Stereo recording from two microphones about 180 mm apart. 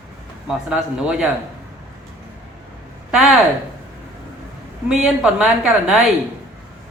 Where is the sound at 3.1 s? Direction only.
Centre (ahead or behind).